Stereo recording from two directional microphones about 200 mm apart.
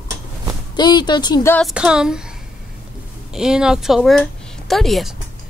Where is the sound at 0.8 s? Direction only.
20° left (ahead or behind).